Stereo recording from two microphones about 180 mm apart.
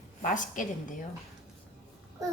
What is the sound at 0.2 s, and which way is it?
Speech, 45° left (ahead or behind).